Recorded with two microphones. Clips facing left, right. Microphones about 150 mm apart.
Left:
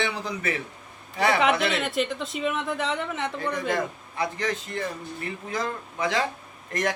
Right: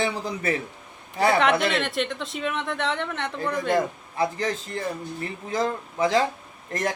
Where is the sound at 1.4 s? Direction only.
Centre (ahead or behind).